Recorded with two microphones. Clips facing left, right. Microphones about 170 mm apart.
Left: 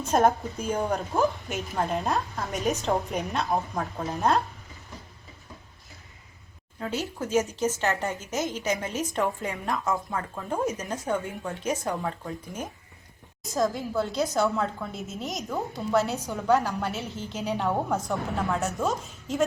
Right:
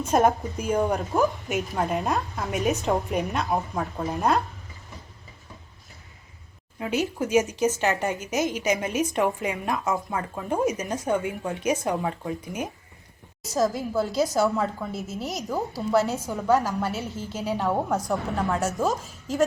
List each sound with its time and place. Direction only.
0.0 s a woman's voice: 10° right (ahead or behind)
6.7 s a woman's voice: 15° right (ahead or behind)
9.7 s a woman's voice: 5° right (ahead or behind)
13.4 s a woman's voice: 5° right (ahead or behind)